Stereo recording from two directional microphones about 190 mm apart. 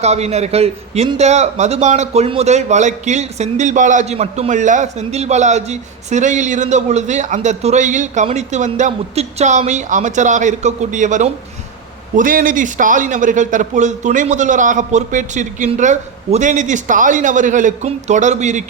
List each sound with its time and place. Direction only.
0.0 s a man's voice: 35° right (ahead or behind)